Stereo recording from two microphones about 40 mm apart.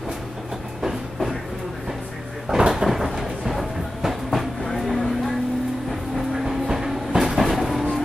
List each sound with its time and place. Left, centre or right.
2.4 s cupboard open or close: centre
2.7 s a sound: centre
3.1 s train: centre
6.1 s train: centre